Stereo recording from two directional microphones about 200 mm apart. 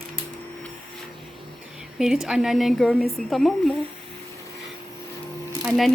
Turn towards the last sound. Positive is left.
turn(degrees=0)  # may be behind; listen again after turning